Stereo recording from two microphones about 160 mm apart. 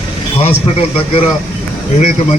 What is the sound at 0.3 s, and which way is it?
A man's voice, 40° left (ahead or behind).